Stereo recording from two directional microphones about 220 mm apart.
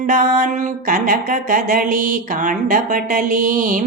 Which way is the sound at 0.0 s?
35° right (ahead or behind).